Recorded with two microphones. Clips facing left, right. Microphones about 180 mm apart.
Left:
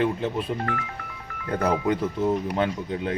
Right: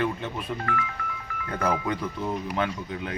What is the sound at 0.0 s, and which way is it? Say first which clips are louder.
Speech: left 4 dB; 30° left (ahead or behind).